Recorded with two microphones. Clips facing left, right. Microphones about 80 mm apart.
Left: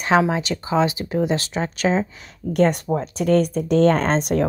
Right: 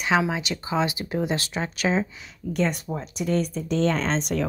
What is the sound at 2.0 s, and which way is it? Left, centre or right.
Speech, left.